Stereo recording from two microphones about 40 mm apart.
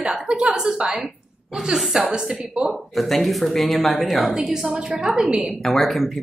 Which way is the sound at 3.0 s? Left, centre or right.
Centre.